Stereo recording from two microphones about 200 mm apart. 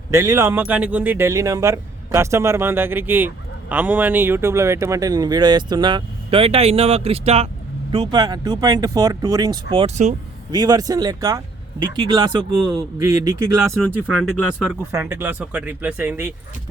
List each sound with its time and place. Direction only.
0.1 s speech: 15° right (ahead or behind); by 10.2 s 35° right (ahead or behind)
10.5 s speech: 20° right (ahead or behind)
13.7 s speech: centre (ahead or behind)